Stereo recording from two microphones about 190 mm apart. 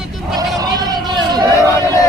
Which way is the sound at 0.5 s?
20° right (ahead or behind).